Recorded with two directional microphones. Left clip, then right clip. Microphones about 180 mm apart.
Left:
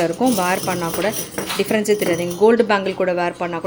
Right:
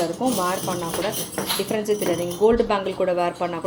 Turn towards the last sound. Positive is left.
turn(degrees=20)  # may be behind; listen again after turning